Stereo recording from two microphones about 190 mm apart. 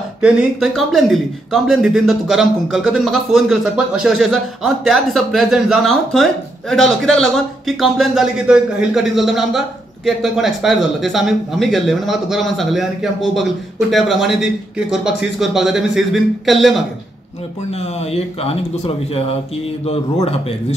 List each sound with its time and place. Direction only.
0.2 s speech: 5° right (ahead or behind)
17.6 s speech: 35° left (ahead or behind)